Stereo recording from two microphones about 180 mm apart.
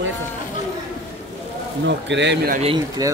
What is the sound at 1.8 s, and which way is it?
Speech, 80° right.